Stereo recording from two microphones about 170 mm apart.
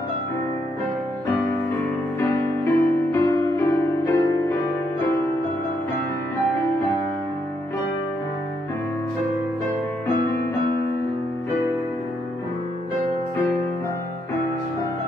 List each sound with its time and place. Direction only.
2.1 s music: 15° left (ahead or behind)